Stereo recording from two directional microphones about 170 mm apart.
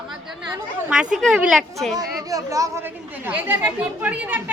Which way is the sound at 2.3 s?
20° right (ahead or behind).